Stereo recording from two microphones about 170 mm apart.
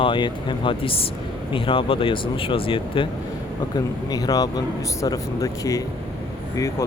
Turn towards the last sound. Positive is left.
turn(degrees=20)  # may be behind; listen again after turning